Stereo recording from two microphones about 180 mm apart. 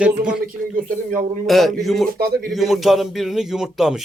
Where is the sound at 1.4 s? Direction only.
Centre (ahead or behind).